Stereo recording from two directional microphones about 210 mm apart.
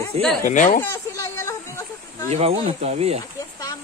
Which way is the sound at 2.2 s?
30° right (ahead or behind).